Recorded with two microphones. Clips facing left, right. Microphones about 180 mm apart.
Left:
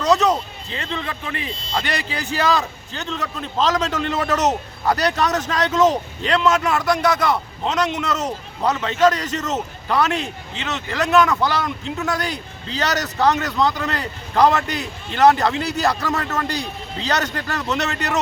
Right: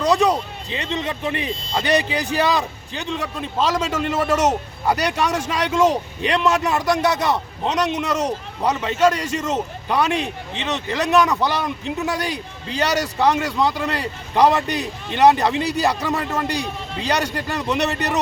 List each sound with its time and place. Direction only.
0.0 s a man's voice: 10° right (ahead or behind)